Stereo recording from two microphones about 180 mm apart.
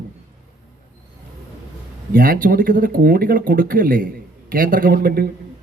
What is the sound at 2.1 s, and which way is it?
A man's voice, 50° right (ahead or behind).